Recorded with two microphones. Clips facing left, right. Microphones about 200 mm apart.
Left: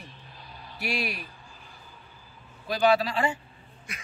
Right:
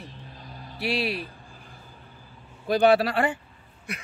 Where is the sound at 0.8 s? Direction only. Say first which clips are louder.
Right 5 dB; 30° right (ahead or behind).